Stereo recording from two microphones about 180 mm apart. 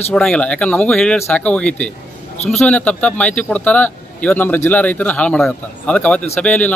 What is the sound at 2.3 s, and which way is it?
Speech, 35° left (ahead or behind).